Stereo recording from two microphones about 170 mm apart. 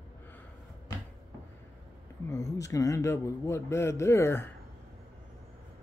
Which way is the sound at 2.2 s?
20° left (ahead or behind).